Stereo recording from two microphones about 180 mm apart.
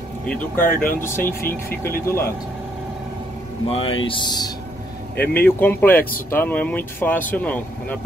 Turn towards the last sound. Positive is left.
turn(degrees=10)  # may be behind; listen again after turning